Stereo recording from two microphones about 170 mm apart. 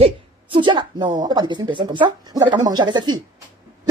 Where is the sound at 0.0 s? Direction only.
30° right (ahead or behind).